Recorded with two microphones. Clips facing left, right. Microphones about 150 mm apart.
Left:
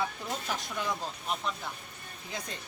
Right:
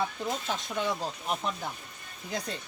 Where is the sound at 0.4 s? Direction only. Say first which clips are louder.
Right 1 dB; 25° right (ahead or behind).